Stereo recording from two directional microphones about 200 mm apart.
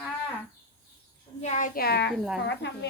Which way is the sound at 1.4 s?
35° left (ahead or behind).